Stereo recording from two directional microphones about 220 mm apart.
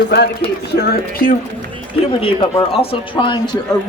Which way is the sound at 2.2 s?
25° left (ahead or behind).